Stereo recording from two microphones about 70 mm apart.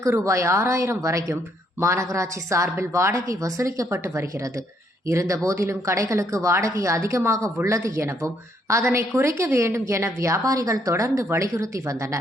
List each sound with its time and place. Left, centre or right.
0.1 s speech: right